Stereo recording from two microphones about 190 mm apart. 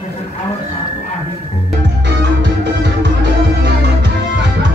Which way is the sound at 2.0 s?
65° right (ahead or behind).